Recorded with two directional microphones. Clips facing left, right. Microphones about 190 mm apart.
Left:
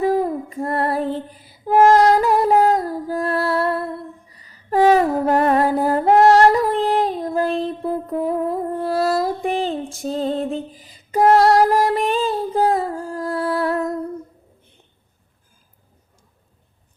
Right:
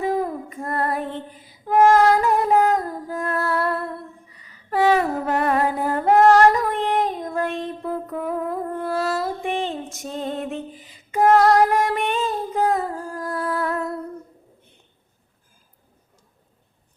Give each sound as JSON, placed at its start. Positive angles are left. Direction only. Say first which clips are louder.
{"t": 0.0, "sound": "female singing", "louder": "left 4 dB", "side_deg": 35}
{"t": 2.2, "sound": "music", "louder": "left 3 dB", "side_deg": 35}
{"t": 4.3, "sound": "a sound", "louder": "left 5 dB", "side_deg": 35}